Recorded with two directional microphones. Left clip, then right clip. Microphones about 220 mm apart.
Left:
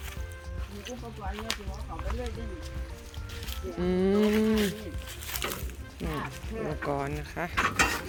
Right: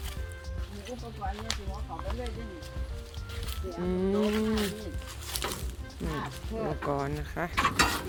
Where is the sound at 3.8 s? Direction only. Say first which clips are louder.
Left 3 dB; 25° left (ahead or behind).